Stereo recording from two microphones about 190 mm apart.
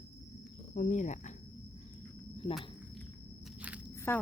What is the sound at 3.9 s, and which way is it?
Biting, 15° left (ahead or behind).